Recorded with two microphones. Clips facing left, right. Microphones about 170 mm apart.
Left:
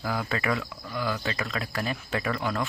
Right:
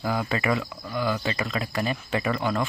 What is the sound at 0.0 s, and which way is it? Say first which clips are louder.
Speech: right 3 dB; 5° right (ahead or behind).